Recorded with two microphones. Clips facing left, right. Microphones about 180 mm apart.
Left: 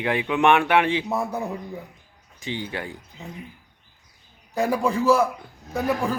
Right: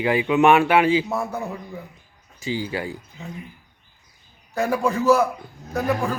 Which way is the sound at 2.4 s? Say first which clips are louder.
Right 4 dB; 5° right (ahead or behind).